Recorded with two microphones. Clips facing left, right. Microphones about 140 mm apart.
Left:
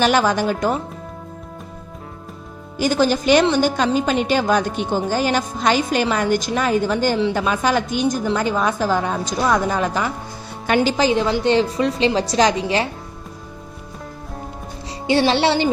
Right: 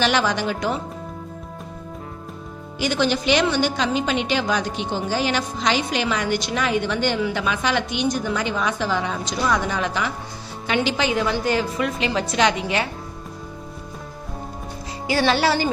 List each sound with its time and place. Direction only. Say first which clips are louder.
0.0 s a woman's voice: left 4 dB; 45° left (ahead or behind)
2.7 s a woman's voice: left 4 dB; 45° left (ahead or behind)
15.3 s speech: left 3 dB; 25° left (ahead or behind)